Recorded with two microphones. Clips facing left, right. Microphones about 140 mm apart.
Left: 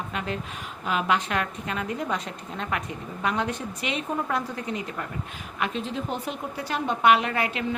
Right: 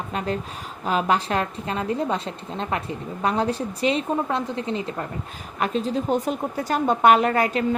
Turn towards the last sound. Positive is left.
turn(degrees=-40)  # may be behind; listen again after turning